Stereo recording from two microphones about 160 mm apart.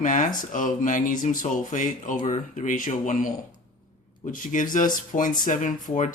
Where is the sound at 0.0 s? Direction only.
55° left (ahead or behind).